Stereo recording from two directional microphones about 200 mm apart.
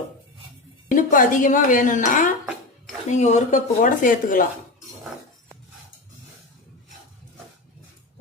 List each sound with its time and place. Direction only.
0.9 s speech: 40° left (ahead or behind)